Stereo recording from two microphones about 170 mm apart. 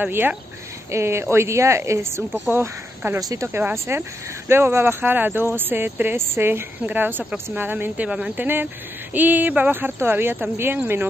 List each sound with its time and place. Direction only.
0.0 s speech: 10° right (ahead or behind)